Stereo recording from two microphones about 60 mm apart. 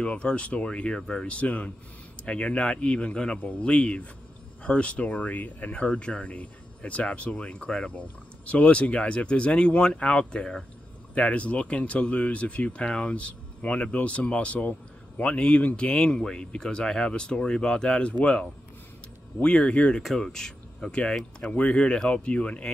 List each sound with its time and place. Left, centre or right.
0.0 s speech: centre
20.0 s speech: centre